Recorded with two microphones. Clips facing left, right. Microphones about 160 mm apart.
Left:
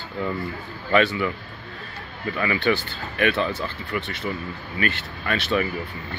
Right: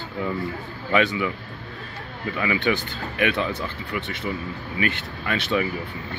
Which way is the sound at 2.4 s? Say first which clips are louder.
Left 1 dB; 10° right (ahead or behind).